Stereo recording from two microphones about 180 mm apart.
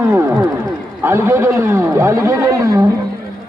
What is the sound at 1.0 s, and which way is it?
A man's voice, 15° right (ahead or behind).